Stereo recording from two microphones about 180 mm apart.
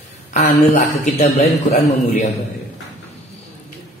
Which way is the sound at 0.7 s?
40° left (ahead or behind).